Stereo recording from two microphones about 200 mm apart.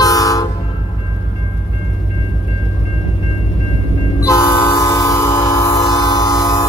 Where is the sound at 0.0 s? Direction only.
20° left (ahead or behind).